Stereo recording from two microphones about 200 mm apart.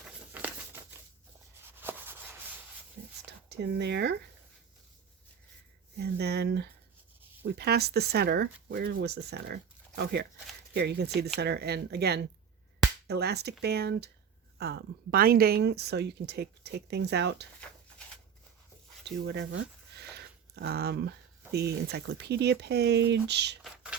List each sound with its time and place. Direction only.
0.3 s crumpling: 10° right (ahead or behind)
1.7 s a sound: 10° right (ahead or behind)
3.2 s speech: 60° right (ahead or behind)
6.0 s speech: 55° right (ahead or behind)
19.0 s speech: 65° right (ahead or behind)
23.6 s a sound: 5° right (ahead or behind)